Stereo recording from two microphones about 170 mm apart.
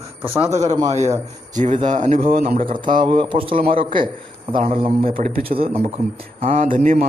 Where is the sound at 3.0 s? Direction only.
30° right (ahead or behind).